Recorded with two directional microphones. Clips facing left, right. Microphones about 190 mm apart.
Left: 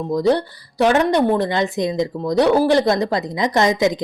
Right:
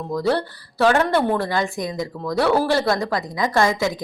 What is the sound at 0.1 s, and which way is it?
A woman's voice, 20° left (ahead or behind).